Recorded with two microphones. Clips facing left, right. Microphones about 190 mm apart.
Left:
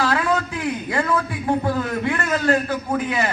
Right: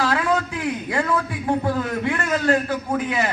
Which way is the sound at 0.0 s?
15° right (ahead or behind).